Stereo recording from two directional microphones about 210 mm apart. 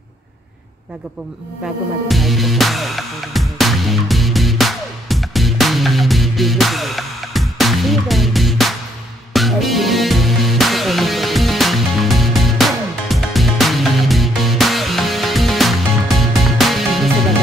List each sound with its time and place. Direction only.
2.0 s music: centre (ahead or behind)